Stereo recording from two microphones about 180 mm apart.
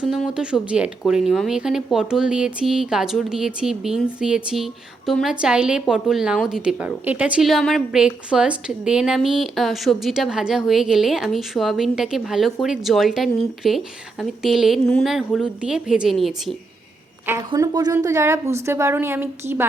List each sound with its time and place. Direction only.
0.1 s a woman's voice: 5° right (ahead or behind)
17.5 s a woman's voice: 20° right (ahead or behind)